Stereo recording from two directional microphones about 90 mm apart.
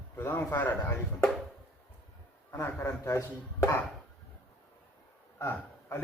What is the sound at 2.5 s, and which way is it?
Speech, 30° left (ahead or behind).